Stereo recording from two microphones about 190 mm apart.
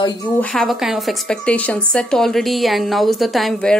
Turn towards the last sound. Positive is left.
turn(degrees=0)  # may be behind; listen again after turning